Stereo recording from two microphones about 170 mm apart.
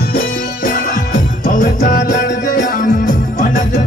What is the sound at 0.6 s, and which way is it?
Music, 55° left (ahead or behind).